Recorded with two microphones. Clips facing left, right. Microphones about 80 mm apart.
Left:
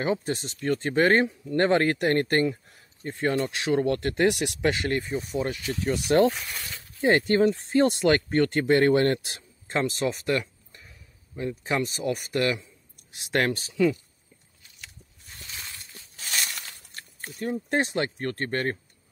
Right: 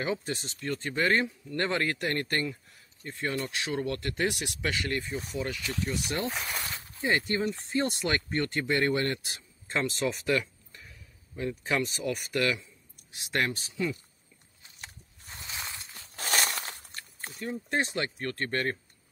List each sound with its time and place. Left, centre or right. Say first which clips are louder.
0.0 s speech: left 5 dB; left
5.9 s speech: left 13 dB; left
7.0 s speech: left 8 dB; left
11.3 s speech: left 2 dB; left
14.8 s biting: right 1 dB; right
15.4 s a sound: right 2 dB; right
16.2 s a sound: right 4 dB; right
17.5 s speech: left 4 dB; left